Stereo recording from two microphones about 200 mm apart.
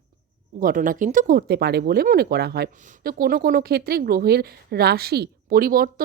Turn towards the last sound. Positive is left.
turn(degrees=-45)  # may be behind; listen again after turning